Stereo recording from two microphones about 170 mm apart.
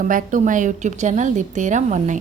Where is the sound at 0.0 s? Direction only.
50° right (ahead or behind).